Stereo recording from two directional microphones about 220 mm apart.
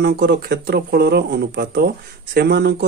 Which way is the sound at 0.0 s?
45° right (ahead or behind).